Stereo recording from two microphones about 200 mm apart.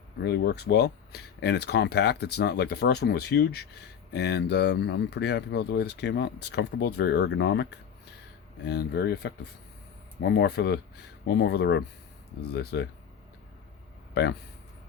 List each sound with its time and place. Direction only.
0.2 s speech: 55° left (ahead or behind)
14.1 s speech: 60° left (ahead or behind)